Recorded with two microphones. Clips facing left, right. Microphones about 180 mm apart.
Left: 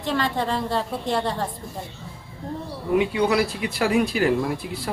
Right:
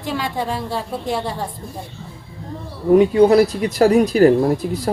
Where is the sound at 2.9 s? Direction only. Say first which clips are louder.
Right 9 dB; 40° right (ahead or behind).